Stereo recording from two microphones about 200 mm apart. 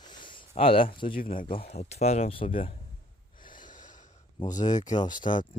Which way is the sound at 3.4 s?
40° left (ahead or behind).